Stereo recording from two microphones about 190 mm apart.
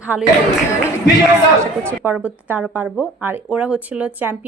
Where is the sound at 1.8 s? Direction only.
10° right (ahead or behind).